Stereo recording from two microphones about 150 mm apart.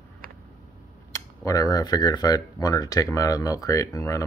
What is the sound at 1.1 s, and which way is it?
Speech, 25° left (ahead or behind).